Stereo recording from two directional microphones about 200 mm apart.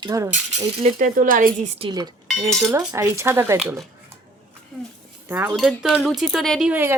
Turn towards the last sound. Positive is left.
turn(degrees=-10)  # may be behind; listen again after turning